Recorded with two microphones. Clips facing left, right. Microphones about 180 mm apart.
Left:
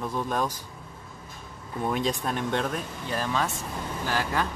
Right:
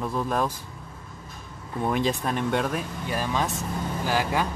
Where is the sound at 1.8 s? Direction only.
Centre (ahead or behind).